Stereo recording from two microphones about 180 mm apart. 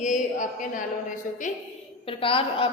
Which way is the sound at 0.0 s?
45° left (ahead or behind).